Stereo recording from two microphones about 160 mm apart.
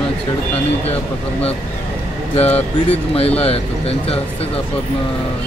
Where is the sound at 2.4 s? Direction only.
40° left (ahead or behind).